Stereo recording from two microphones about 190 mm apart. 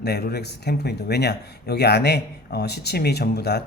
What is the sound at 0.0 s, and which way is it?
Speech, 60° left (ahead or behind).